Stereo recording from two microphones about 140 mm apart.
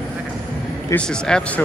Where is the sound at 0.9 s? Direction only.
5° left (ahead or behind).